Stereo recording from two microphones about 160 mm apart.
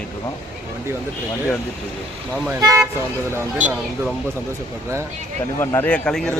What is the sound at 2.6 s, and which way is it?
Speech, 20° right (ahead or behind).